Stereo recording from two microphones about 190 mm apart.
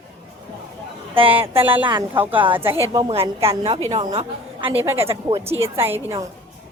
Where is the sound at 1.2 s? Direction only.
30° right (ahead or behind).